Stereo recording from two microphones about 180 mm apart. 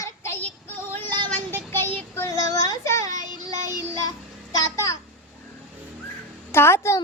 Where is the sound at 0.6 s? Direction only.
15° left (ahead or behind).